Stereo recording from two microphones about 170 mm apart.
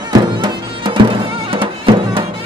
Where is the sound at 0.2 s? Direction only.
25° right (ahead or behind).